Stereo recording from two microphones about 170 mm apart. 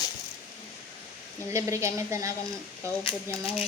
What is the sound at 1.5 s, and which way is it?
Speech, 15° right (ahead or behind).